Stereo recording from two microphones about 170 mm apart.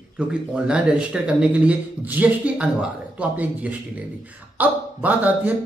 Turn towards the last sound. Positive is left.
turn(degrees=-10)  # may be behind; listen again after turning